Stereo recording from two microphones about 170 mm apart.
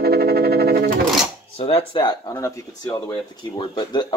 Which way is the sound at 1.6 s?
30° left (ahead or behind).